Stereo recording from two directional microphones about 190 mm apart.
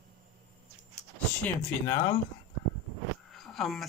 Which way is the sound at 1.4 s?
15° left (ahead or behind).